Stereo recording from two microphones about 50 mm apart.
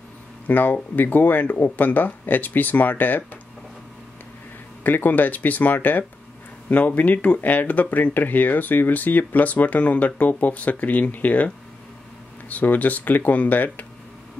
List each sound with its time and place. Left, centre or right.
0.5 s speech: left
4.8 s speech: left